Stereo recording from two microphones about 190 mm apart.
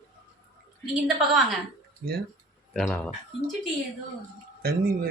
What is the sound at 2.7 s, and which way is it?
Speech, 5° left (ahead or behind).